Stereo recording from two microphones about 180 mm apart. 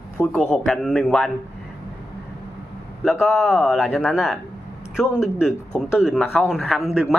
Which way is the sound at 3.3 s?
Centre (ahead or behind).